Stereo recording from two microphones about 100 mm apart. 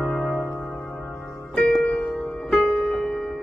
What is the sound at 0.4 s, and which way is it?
Music, 30° left (ahead or behind).